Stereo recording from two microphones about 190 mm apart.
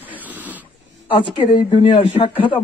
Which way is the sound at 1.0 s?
25° left (ahead or behind).